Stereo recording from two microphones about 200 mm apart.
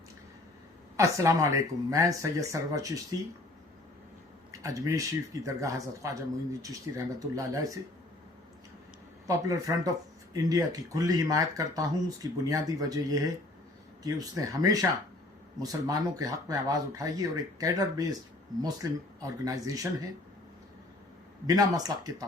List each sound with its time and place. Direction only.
0.9 s speech: 15° right (ahead or behind)
4.6 s speech: 15° right (ahead or behind)
9.2 s speech: 15° right (ahead or behind)
21.4 s speech: 20° right (ahead or behind)